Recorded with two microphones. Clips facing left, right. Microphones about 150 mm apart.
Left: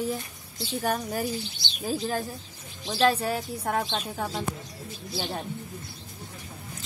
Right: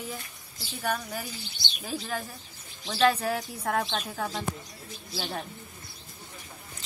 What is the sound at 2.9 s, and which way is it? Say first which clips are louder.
Speech: left 1 dB; 5° left (ahead or behind).